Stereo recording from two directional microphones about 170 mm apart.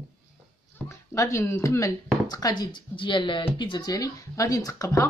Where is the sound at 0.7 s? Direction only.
15° left (ahead or behind).